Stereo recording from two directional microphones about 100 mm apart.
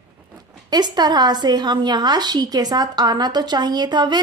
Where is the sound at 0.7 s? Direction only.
45° right (ahead or behind).